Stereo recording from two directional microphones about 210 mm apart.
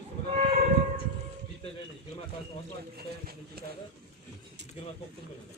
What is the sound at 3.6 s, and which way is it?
Speech, 45° right (ahead or behind).